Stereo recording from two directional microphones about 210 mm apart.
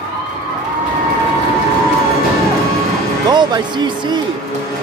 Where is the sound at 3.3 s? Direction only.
20° right (ahead or behind).